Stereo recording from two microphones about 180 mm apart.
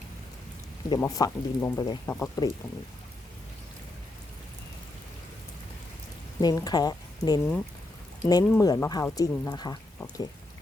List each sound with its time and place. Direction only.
0.9 s speech: 20° left (ahead or behind)
6.4 s speech: 20° left (ahead or behind)